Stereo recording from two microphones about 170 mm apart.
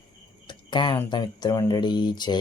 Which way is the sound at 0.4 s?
25° left (ahead or behind).